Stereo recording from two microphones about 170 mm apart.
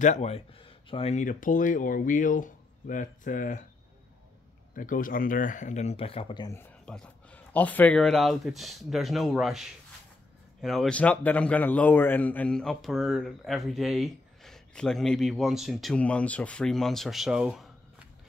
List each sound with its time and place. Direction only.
0.0 s speech: 40° left (ahead or behind)
4.7 s speech: 55° left (ahead or behind); by 6.5 s 30° left (ahead or behind)
6.5 s a man's voice: 10° left (ahead or behind)